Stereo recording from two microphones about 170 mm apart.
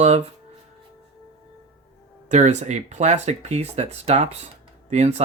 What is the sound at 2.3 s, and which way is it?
Speech, 45° right (ahead or behind).